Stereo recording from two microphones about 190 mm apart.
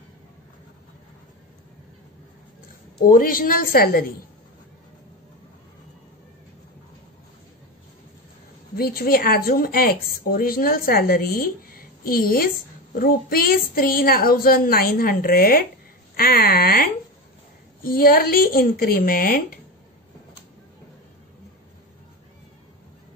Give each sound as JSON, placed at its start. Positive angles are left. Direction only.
{"t": 3.1, "sound": "a woman's voice", "side_deg": 50}
{"t": 8.7, "sound": "a woman's voice", "side_deg": 50}